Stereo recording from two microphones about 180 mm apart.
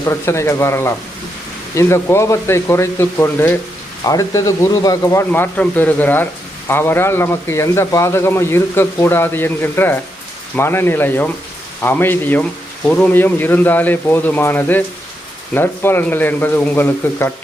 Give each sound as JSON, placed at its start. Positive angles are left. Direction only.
{"t": 0.0, "sound": "a man's voice", "side_deg": 15}